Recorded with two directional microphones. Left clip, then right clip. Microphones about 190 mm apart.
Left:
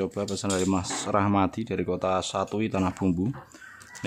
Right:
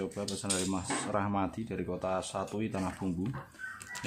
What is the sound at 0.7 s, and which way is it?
Speech, 50° left (ahead or behind).